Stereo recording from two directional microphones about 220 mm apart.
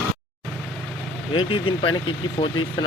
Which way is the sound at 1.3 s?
25° left (ahead or behind).